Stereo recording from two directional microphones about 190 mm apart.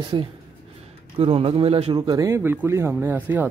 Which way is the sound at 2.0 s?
20° right (ahead or behind).